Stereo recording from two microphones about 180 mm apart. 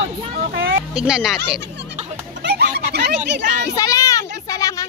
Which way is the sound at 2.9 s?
65° right (ahead or behind).